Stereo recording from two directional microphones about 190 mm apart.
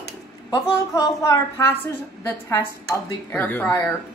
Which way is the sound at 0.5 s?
20° left (ahead or behind).